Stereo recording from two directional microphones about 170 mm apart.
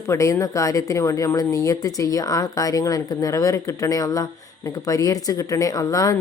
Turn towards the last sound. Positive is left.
turn(degrees=20)  # may be behind; listen again after turning